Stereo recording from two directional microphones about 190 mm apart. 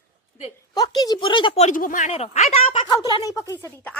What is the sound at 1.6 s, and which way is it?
Speech, 45° left (ahead or behind).